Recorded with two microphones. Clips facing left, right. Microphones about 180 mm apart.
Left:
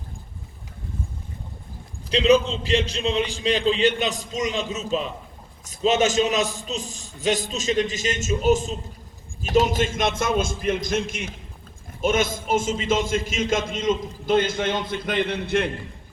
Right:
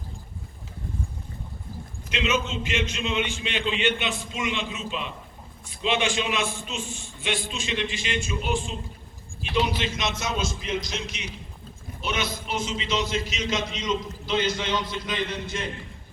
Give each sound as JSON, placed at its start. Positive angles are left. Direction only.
{"t": 2.0, "sound": "a man's voice", "side_deg": 35}